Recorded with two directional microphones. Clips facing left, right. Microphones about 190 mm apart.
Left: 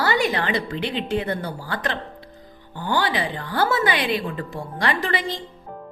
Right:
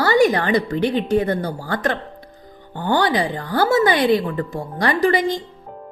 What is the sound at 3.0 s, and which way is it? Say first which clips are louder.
A woman's voice: right 5 dB; 45° right (ahead or behind).